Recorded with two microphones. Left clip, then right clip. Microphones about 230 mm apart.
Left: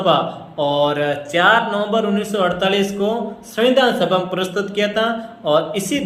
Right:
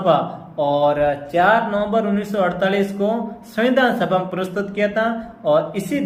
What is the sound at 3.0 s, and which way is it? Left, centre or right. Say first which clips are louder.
Speech: left 1 dB; left.